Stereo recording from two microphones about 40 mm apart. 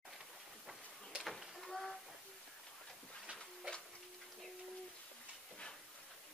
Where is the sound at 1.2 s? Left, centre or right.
Centre.